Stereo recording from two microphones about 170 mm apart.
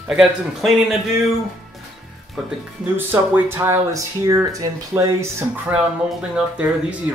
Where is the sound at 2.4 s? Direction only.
10° right (ahead or behind).